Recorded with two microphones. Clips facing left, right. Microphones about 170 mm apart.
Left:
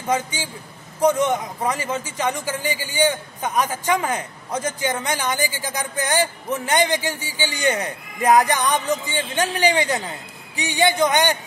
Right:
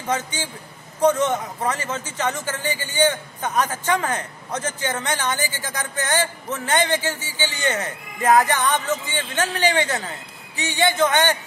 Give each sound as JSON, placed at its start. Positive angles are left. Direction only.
{"t": 0.0, "sound": "a man's voice", "side_deg": 10}